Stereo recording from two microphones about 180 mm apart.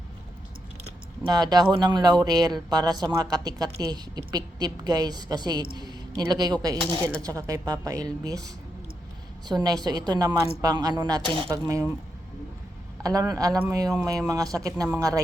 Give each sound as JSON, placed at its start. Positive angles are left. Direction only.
{"t": 1.2, "sound": "a woman's voice", "side_deg": -20}
{"t": 9.5, "sound": "a woman's voice", "side_deg": -20}
{"t": 13.0, "sound": "a woman's voice", "side_deg": -20}